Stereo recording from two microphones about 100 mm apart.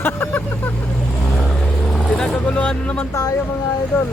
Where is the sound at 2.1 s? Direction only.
10° left (ahead or behind).